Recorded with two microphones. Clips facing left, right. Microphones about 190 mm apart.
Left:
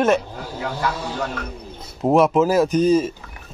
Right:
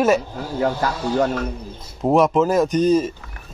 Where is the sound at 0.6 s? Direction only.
40° right (ahead or behind).